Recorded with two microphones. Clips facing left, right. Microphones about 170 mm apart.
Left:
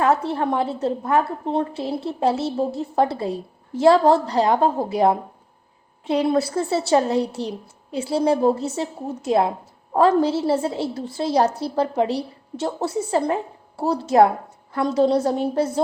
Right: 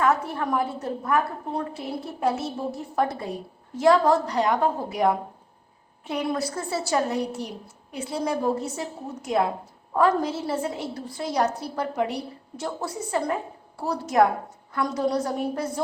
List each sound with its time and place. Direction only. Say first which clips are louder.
0.0 s a woman's voice: left 4 dB; 30° left (ahead or behind)